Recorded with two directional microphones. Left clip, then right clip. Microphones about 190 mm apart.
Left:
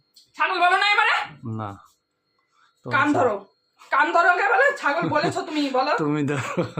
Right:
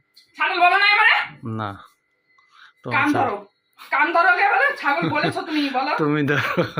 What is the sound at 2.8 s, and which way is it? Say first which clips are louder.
Speech: right 1 dB; 10° right (ahead or behind).